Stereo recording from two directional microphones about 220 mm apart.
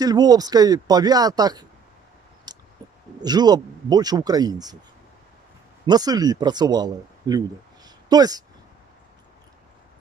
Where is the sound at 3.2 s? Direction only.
20° right (ahead or behind).